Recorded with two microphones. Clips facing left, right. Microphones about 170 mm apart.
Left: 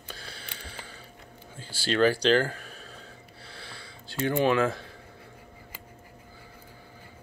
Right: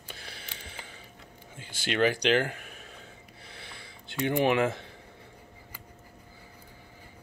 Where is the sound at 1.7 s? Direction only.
20° right (ahead or behind).